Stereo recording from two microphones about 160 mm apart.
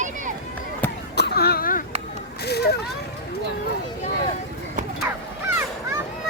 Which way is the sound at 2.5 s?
90° left.